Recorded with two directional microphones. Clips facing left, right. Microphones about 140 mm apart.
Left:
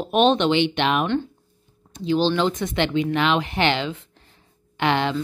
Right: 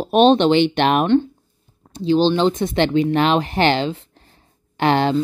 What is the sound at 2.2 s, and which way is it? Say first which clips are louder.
Speech: right 4 dB; 25° right (ahead or behind).